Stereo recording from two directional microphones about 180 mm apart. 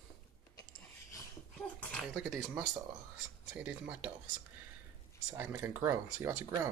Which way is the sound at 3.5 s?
5° right (ahead or behind).